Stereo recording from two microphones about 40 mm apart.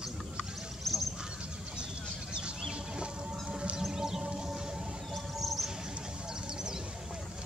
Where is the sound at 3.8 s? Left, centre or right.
Centre.